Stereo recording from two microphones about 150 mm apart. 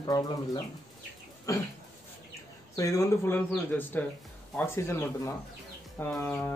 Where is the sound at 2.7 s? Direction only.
20° left (ahead or behind).